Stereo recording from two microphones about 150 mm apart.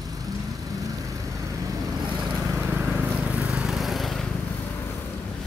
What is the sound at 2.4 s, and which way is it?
Vehicle, 15° right (ahead or behind).